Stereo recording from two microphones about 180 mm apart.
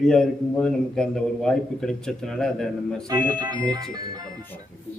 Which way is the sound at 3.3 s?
25° right (ahead or behind).